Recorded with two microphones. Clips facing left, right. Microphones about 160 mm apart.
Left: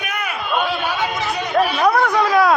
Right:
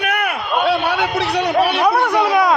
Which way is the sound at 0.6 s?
65° right (ahead or behind).